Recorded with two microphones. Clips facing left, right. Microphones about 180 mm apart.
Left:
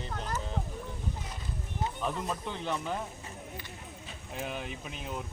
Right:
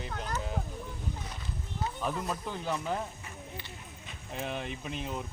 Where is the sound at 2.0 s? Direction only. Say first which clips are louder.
Right 1 dB; 5° right (ahead or behind).